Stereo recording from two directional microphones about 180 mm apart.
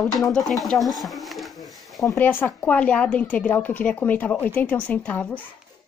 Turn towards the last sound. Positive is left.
turn(degrees=10)  # may be behind; listen again after turning